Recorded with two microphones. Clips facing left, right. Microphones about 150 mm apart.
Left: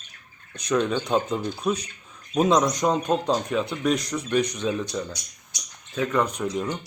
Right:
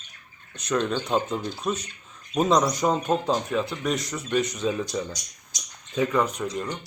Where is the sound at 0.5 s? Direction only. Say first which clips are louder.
Left 2 dB; centre (ahead or behind).